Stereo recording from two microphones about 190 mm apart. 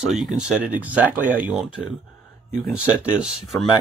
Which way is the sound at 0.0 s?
Centre (ahead or behind).